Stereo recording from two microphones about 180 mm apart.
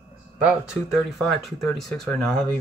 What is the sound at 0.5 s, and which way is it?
Speech, centre (ahead or behind).